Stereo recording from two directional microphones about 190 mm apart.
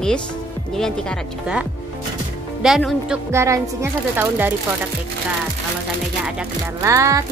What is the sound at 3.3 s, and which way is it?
Speech, 15° right (ahead or behind).